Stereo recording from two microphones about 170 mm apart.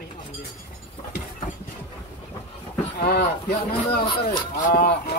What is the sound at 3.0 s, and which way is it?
Speech, 65° left (ahead or behind).